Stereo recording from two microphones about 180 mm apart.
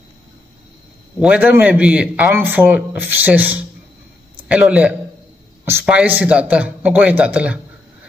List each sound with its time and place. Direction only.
1.2 s a man's voice: 10° right (ahead or behind)